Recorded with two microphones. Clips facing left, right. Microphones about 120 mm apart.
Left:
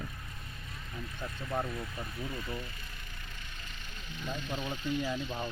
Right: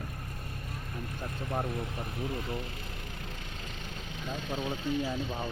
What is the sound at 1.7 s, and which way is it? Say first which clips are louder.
Speech: right 3 dB; 65° right (ahead or behind).